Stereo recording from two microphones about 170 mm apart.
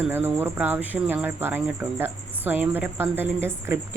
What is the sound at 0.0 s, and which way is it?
Speech, 10° right (ahead or behind).